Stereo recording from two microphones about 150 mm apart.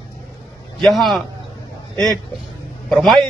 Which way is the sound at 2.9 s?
5° left (ahead or behind).